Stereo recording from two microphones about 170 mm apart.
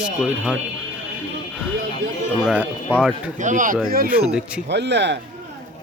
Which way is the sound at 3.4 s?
50° right (ahead or behind).